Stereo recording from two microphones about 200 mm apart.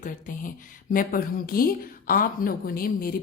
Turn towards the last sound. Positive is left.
turn(degrees=45)  # may be behind; listen again after turning